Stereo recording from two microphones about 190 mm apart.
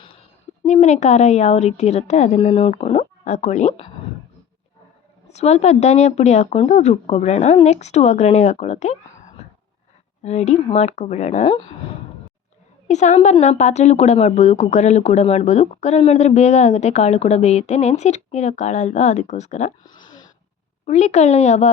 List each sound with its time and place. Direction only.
0.6 s speech: 35° left (ahead or behind)
5.3 s speech: 35° left (ahead or behind)
10.2 s speech: 35° left (ahead or behind)
12.9 s speech: 35° left (ahead or behind)
20.8 s speech: 35° left (ahead or behind)